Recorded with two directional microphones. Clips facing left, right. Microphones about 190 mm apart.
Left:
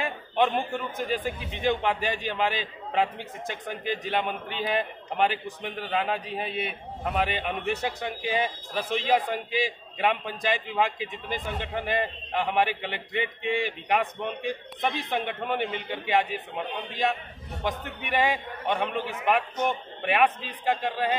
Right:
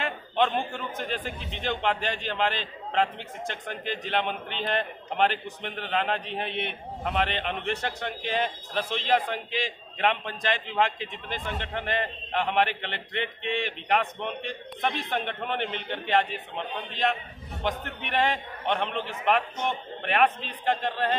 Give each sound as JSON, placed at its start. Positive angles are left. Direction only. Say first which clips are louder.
{"t": 0.0, "sound": "a man's voice", "louder": "left 1 dB", "side_deg": 10}